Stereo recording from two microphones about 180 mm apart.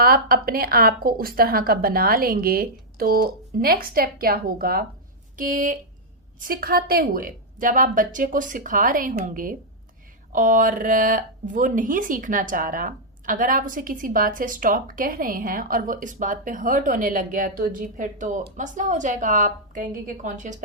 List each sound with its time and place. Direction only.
0.0 s a woman's voice: 55° right (ahead or behind)